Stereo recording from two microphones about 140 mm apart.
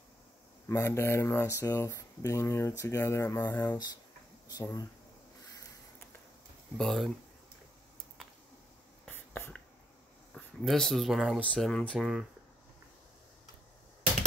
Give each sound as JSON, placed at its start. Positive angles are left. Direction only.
{"t": 0.7, "sound": "speech", "side_deg": 20}
{"t": 4.5, "sound": "speech", "side_deg": 25}
{"t": 6.8, "sound": "speech", "side_deg": 0}
{"t": 9.0, "sound": "writing", "side_deg": 15}
{"t": 10.3, "sound": "speech", "side_deg": 0}
{"t": 11.4, "sound": "speech", "side_deg": 5}